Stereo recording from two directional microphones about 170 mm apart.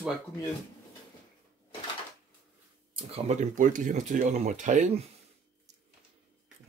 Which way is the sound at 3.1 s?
45° right (ahead or behind).